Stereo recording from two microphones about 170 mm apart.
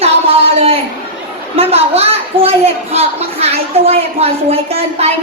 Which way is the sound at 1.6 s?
35° right (ahead or behind).